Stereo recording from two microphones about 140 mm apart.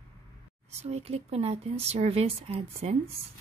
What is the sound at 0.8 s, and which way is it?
A woman's voice, 50° right (ahead or behind).